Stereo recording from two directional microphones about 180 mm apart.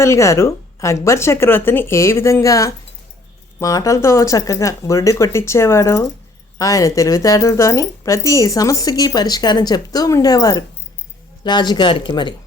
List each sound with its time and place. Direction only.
0.0 s speech: 15° left (ahead or behind)